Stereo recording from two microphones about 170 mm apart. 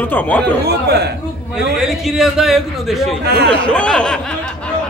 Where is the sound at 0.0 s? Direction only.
10° left (ahead or behind).